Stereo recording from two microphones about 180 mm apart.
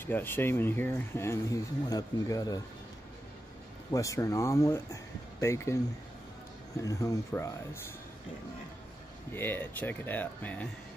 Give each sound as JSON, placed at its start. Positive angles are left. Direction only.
{"t": 0.0, "sound": "speech", "side_deg": 10}
{"t": 3.9, "sound": "speech", "side_deg": 20}
{"t": 6.8, "sound": "speech", "side_deg": 20}
{"t": 9.3, "sound": "speech", "side_deg": 10}